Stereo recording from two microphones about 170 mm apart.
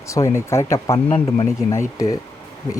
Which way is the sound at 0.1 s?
15° left (ahead or behind).